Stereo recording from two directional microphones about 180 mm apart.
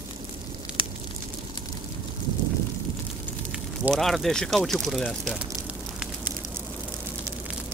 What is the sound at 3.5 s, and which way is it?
Speech, centre (ahead or behind).